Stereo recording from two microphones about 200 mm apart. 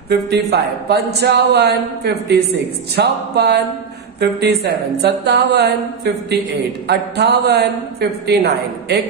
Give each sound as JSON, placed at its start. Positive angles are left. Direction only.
{"t": 0.3, "sound": "a man's voice", "side_deg": -55}